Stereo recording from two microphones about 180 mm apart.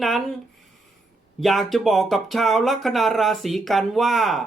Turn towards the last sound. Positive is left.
turn(degrees=0)  # may be behind; listen again after turning